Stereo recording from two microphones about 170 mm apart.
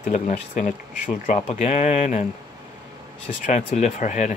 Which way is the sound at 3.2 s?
45° left (ahead or behind).